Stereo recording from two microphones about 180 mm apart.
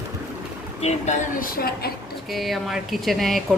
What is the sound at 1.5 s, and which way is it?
Speech, 55° left (ahead or behind).